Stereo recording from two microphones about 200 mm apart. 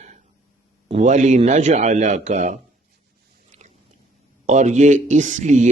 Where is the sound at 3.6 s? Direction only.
35° right (ahead or behind).